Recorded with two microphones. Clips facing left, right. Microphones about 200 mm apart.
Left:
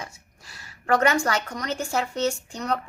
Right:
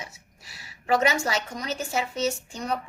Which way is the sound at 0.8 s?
5° right (ahead or behind).